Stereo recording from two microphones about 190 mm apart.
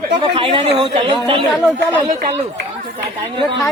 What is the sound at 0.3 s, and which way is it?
Speech, 30° right (ahead or behind).